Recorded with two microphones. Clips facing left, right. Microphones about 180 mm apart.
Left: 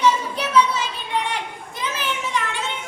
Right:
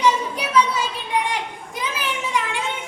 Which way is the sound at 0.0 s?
10° right (ahead or behind).